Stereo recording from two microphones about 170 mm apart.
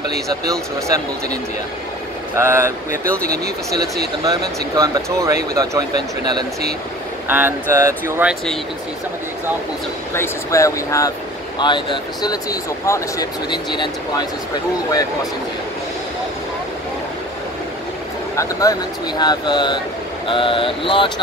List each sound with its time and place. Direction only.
0.5 s speech: 20° right (ahead or behind)
3.2 s speech: 60° right (ahead or behind)
4.2 s speech: 20° right (ahead or behind)
7.2 s speech: 10° right (ahead or behind)
10.1 s speech: 15° left (ahead or behind)
18.3 s speech: 20° left (ahead or behind)